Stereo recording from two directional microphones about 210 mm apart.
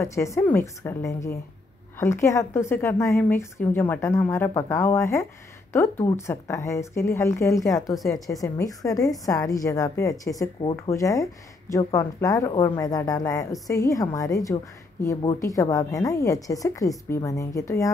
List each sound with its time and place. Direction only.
0.0 s a woman's voice: 15° left (ahead or behind)
7.8 s speech: centre (ahead or behind)
8.3 s a woman's voice: 15° left (ahead or behind)